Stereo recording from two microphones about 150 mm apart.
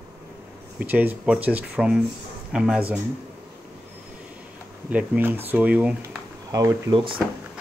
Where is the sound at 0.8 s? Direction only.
10° right (ahead or behind).